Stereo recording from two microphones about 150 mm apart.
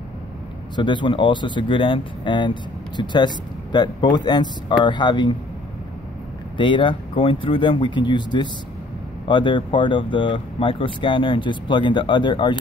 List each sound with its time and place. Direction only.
0.7 s speech: 30° left (ahead or behind)
6.5 s speech: 35° left (ahead or behind)